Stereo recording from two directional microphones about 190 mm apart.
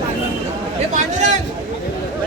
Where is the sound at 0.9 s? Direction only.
40° right (ahead or behind).